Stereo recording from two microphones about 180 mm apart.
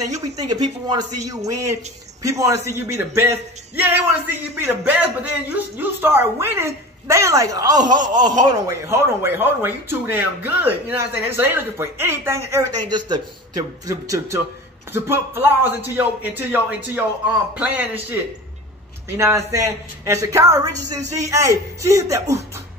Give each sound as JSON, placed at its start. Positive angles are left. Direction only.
{"t": 0.0, "sound": "a man's voice", "side_deg": -20}
{"t": 19.0, "sound": "speech", "side_deg": -15}